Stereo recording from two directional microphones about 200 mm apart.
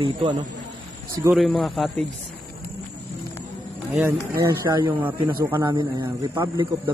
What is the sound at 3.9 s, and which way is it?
A man's voice, 10° right (ahead or behind).